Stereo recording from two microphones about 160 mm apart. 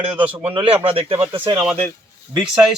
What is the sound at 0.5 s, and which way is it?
Speech, 35° right (ahead or behind).